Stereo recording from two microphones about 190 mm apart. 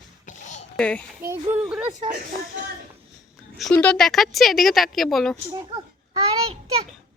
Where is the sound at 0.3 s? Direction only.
40° left (ahead or behind).